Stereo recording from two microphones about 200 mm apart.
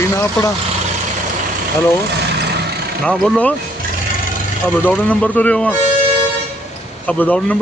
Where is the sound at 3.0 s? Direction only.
5° left (ahead or behind).